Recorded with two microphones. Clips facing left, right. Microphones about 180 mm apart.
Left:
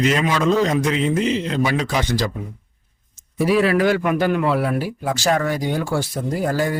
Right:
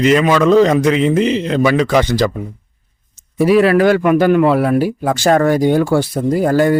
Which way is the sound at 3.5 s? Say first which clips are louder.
Right 6 dB; 60° right (ahead or behind).